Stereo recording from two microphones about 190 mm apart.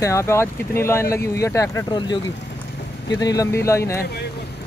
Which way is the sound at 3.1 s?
20° left (ahead or behind).